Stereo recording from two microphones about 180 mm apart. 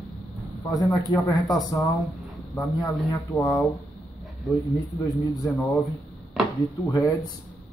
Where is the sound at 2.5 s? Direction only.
Centre (ahead or behind).